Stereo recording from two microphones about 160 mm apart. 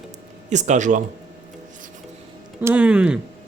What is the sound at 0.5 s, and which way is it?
Speech, 50° right (ahead or behind).